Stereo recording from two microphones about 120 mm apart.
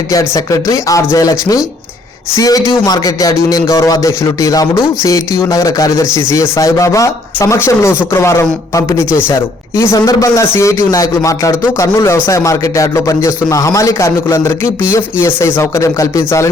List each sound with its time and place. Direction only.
0.1 s speech: 30° left (ahead or behind)